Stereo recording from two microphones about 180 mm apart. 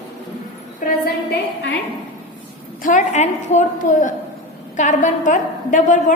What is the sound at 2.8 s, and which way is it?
A woman's voice, 45° left (ahead or behind).